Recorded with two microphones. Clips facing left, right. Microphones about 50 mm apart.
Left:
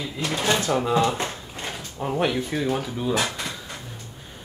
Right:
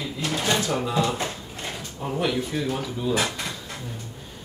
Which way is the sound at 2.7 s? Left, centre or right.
Centre.